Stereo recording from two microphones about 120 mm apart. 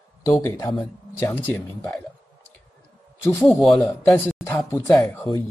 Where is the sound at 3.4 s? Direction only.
Centre (ahead or behind).